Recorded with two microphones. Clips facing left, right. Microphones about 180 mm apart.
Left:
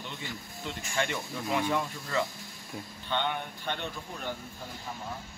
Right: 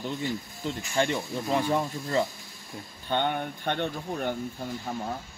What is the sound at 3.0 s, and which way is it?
Speech, 45° right (ahead or behind).